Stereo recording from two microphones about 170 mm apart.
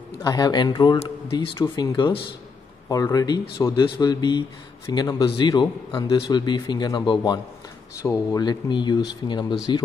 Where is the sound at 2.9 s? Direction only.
20° left (ahead or behind).